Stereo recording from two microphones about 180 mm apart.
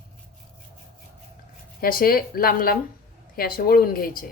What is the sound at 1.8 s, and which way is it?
Speech, 55° left (ahead or behind).